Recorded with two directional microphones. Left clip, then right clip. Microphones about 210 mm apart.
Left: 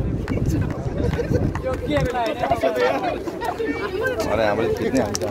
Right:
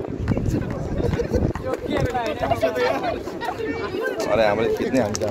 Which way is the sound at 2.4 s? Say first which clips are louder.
Left 1 dB; 45° right (ahead or behind).